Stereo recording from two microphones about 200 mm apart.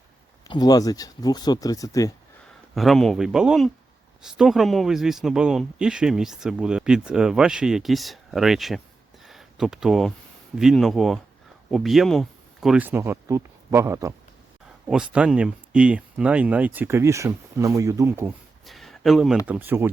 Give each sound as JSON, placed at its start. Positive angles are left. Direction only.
{"t": 0.4, "sound": "speech", "side_deg": 20}
{"t": 2.7, "sound": "speech", "side_deg": 0}
{"t": 9.2, "sound": "a sound", "side_deg": 0}
{"t": 10.6, "sound": "speech", "side_deg": 0}
{"t": 18.6, "sound": "a sound", "side_deg": 0}
{"t": 19.5, "sound": "speech", "side_deg": -10}